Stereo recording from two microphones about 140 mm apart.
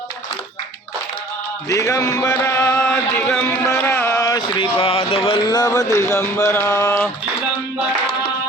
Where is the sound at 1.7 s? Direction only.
25° left (ahead or behind).